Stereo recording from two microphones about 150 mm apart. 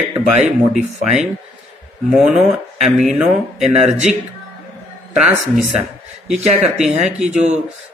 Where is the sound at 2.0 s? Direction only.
5° right (ahead or behind).